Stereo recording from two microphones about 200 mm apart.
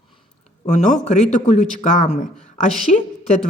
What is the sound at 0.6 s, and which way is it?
A man's voice, 35° left (ahead or behind).